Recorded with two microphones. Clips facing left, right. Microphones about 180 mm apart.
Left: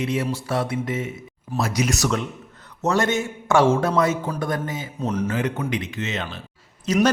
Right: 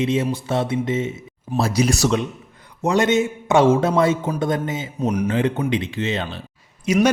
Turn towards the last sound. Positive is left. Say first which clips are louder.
# right 2 dB
turn(degrees=-10)  # may be behind; listen again after turning